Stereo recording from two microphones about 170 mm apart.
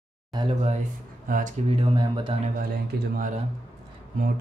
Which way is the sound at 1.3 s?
50° right (ahead or behind).